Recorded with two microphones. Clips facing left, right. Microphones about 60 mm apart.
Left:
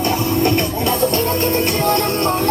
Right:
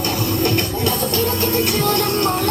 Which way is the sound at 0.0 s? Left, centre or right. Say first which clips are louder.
Left 3 dB; left.